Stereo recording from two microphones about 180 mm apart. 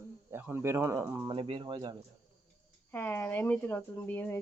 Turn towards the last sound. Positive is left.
turn(degrees=10)  # may be behind; listen again after turning